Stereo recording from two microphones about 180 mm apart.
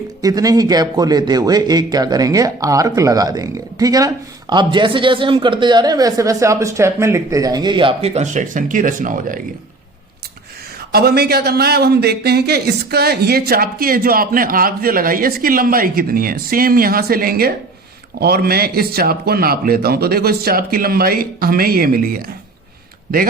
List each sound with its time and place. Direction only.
0.2 s speech: 20° right (ahead or behind); by 9.4 s 45° right (ahead or behind)
10.9 s a man's voice: 60° right (ahead or behind)